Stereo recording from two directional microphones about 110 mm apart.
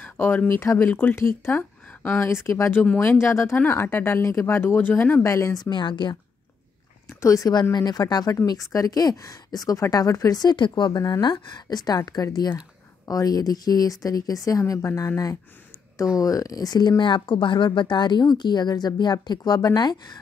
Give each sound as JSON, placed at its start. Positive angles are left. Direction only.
{"t": 0.0, "sound": "speech", "side_deg": 20}
{"t": 7.1, "sound": "a woman's voice", "side_deg": 30}